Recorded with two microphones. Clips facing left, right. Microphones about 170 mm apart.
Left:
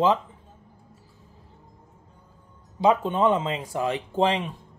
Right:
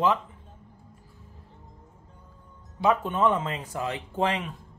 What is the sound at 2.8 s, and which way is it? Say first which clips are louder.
Speech: left 3 dB; 20° left (ahead or behind).